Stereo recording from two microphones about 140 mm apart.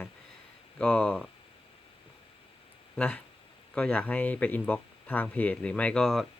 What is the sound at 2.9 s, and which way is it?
Speech, 10° left (ahead or behind).